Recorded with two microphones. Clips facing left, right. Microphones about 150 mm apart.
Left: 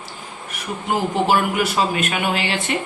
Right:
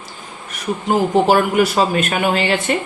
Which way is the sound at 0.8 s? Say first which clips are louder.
Right 5 dB; 40° right (ahead or behind).